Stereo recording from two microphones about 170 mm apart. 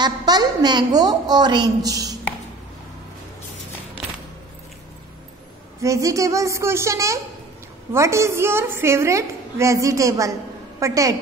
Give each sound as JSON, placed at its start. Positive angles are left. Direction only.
{"t": 0.0, "sound": "a woman's voice", "side_deg": -25}
{"t": 5.8, "sound": "a woman's voice", "side_deg": -20}